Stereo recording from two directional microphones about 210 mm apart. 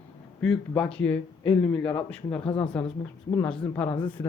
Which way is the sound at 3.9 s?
25° left (ahead or behind).